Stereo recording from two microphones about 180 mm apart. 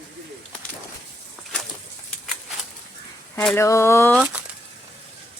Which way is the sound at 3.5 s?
15° left (ahead or behind).